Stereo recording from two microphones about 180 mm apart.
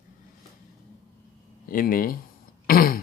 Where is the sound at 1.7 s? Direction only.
50° left (ahead or behind).